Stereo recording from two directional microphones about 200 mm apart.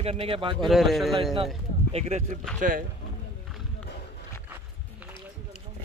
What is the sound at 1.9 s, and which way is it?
Speech, 35° right (ahead or behind).